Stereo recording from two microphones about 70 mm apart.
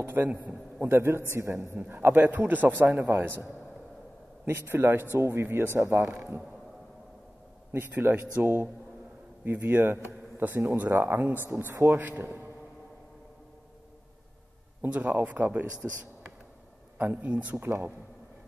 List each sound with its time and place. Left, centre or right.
0.0 s a man's voice: right
4.5 s speech: right
7.7 s a man's voice: right
14.8 s a man's voice: right
17.0 s a man's voice: right
17.6 s speech: right